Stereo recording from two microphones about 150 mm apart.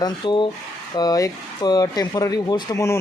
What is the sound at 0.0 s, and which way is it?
Speech, 30° left (ahead or behind).